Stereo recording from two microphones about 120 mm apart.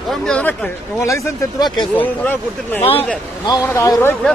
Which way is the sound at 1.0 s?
25° left (ahead or behind).